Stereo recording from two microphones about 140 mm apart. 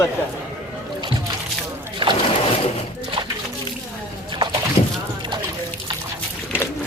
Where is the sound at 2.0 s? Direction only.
40° right (ahead or behind).